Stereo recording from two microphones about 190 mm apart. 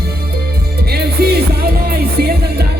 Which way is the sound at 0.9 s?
55° right (ahead or behind).